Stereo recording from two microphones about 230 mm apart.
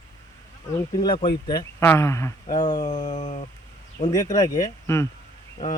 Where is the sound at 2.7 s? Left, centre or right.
Left.